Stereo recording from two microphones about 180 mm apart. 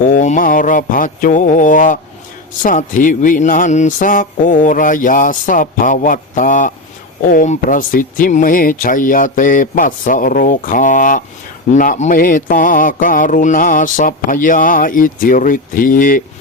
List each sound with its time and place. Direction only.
0.1 s mantra: 45° left (ahead or behind)